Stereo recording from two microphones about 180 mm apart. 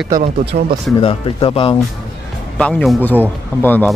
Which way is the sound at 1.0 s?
30° left (ahead or behind).